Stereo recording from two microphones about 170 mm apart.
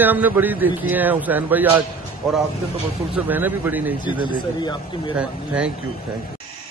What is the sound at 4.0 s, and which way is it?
Speech, 25° left (ahead or behind).